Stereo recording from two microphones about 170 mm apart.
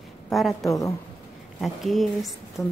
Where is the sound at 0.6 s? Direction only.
20° left (ahead or behind).